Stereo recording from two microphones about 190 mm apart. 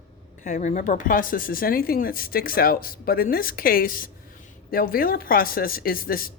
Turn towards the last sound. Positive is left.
turn(degrees=50)  # may be behind; listen again after turning